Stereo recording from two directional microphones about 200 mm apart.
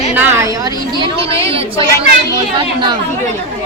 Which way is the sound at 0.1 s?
10° right (ahead or behind).